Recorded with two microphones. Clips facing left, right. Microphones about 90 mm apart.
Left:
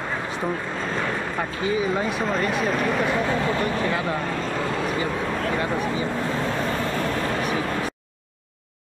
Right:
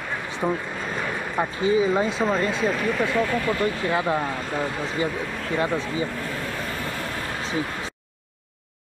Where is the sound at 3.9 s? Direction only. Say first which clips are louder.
Right 2 dB; 25° right (ahead or behind).